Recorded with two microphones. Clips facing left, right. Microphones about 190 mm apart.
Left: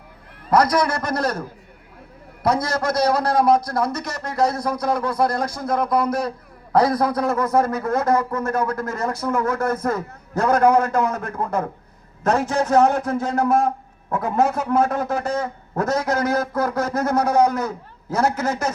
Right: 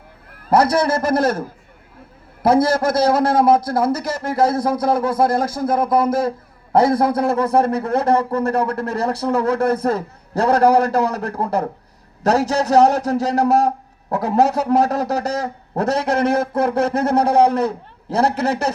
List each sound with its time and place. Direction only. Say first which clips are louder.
0.5 s a man's voice: right 2 dB; 30° right (ahead or behind)